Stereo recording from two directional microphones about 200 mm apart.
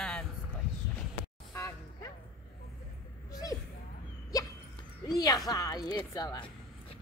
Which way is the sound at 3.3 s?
15° left (ahead or behind).